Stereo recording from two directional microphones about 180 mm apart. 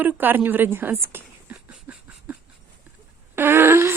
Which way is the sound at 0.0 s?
10° right (ahead or behind).